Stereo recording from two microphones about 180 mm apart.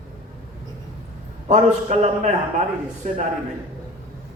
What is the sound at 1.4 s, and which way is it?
A man's voice, 40° right (ahead or behind).